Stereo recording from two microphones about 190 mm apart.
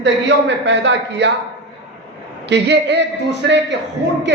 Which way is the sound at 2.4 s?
65° right (ahead or behind).